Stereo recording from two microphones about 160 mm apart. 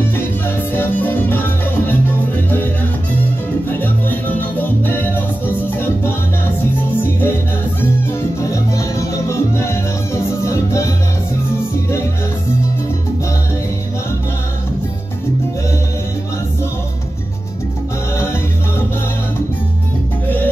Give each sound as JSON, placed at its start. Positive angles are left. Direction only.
{"t": 0.7, "sound": "salsa music", "side_deg": 10}
{"t": 3.6, "sound": "music", "side_deg": 10}